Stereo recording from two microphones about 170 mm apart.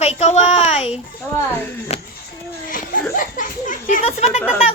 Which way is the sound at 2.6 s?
55° left (ahead or behind).